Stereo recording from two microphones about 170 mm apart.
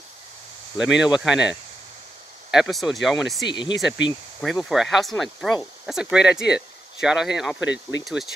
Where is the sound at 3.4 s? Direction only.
25° left (ahead or behind).